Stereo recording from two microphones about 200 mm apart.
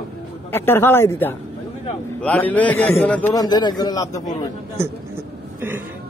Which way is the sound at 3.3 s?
20° left (ahead or behind).